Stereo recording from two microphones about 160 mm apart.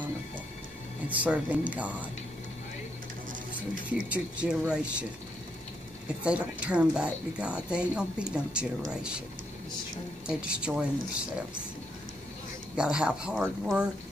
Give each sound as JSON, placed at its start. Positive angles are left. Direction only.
{"t": 1.0, "sound": "speech", "side_deg": -10}
{"t": 3.9, "sound": "speech", "side_deg": -5}
{"t": 6.2, "sound": "speech", "side_deg": -5}
{"t": 10.2, "sound": "speech", "side_deg": -5}
{"t": 12.7, "sound": "speech", "side_deg": -5}